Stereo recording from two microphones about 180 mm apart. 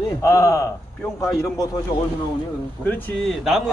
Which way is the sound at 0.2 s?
20° left (ahead or behind).